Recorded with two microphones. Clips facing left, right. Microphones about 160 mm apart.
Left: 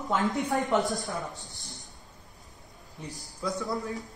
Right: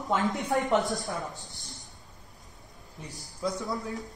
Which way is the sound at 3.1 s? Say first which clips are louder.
Right 1 dB; centre (ahead or behind).